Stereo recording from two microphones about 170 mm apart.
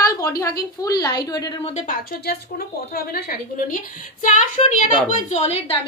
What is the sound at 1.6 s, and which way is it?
Speech, 40° left (ahead or behind).